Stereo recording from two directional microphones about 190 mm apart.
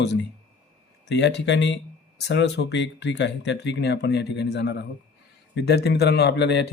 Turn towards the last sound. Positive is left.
turn(degrees=65)  # may be behind; listen again after turning